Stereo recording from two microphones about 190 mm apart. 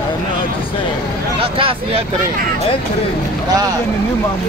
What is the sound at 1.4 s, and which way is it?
Speech, 30° right (ahead or behind).